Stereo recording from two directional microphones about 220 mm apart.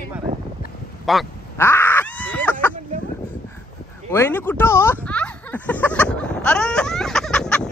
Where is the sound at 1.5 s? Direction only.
10° left (ahead or behind).